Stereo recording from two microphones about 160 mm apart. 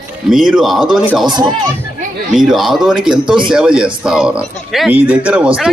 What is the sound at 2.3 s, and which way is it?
A man's voice, centre (ahead or behind).